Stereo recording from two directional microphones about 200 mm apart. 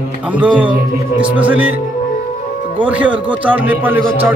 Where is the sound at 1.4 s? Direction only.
5° right (ahead or behind).